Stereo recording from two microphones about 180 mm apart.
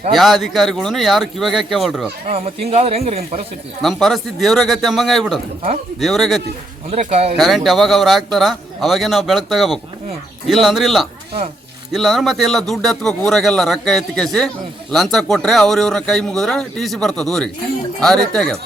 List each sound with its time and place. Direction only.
0.1 s a man's voice: centre (ahead or behind)
2.2 s a man's voice: 35° right (ahead or behind)
3.8 s a man's voice: centre (ahead or behind)
6.9 s a man's voice: 35° right (ahead or behind)
7.3 s a man's voice: centre (ahead or behind)